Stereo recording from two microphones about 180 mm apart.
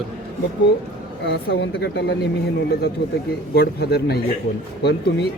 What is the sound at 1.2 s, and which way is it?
Speech, 70° left (ahead or behind).